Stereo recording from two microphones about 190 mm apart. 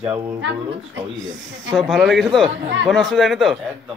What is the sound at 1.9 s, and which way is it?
Speech, centre (ahead or behind).